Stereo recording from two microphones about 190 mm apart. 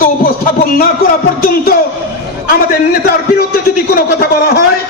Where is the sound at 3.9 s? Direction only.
55° left (ahead or behind).